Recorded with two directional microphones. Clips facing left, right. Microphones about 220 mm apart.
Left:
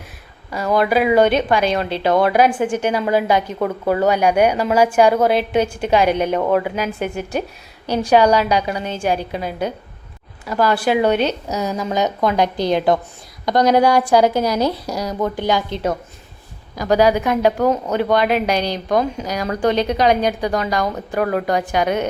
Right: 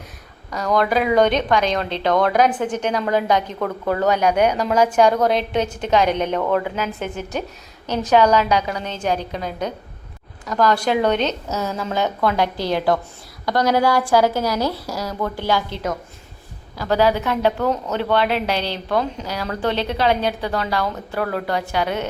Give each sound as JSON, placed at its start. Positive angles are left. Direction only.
{"t": 0.5, "sound": "a woman's voice", "side_deg": 5}